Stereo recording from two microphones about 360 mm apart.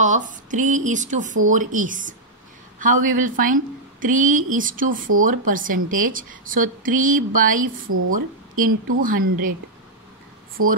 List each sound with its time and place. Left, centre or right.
0.0 s a woman's voice: right
10.6 s speech: right